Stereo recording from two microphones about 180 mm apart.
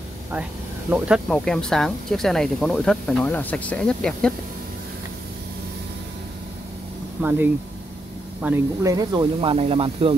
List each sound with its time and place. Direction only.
0.3 s speech: 10° right (ahead or behind)
7.2 s speech: 10° right (ahead or behind); by 10.1 s 30° right (ahead or behind)